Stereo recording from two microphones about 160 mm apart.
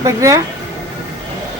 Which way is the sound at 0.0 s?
20° right (ahead or behind).